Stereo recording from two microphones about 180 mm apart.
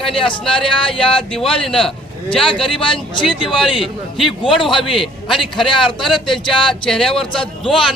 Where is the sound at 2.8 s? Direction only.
30° left (ahead or behind).